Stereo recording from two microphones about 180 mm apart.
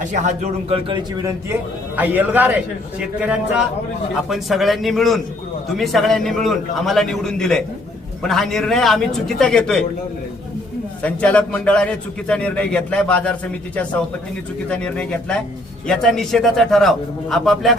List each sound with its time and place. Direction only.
0.1 s speech: 40° right (ahead or behind)
2.0 s a man's voice: 10° right (ahead or behind)
11.0 s a man's voice: 5° left (ahead or behind)